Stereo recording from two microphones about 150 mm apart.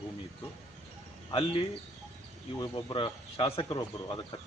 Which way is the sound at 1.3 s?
35° left (ahead or behind).